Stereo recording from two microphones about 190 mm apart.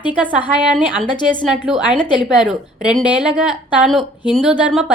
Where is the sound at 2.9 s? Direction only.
5° right (ahead or behind).